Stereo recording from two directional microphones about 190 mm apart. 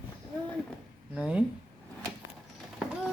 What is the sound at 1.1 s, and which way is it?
Speech, 5° right (ahead or behind).